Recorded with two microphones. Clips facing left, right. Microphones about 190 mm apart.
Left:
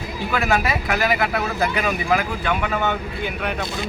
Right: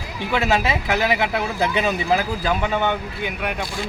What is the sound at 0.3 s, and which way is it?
Speech, 25° right (ahead or behind).